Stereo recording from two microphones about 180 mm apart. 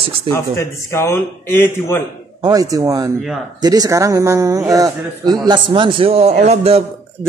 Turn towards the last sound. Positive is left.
turn(degrees=-35)  # may be behind; listen again after turning